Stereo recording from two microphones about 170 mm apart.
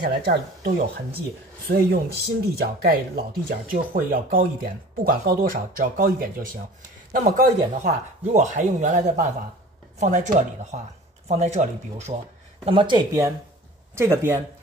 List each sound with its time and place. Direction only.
0.0 s speech: 75° right (ahead or behind)
1.7 s speech: 70° right (ahead or behind); by 12.1 s 45° right (ahead or behind)
12.6 s speech: 30° right (ahead or behind)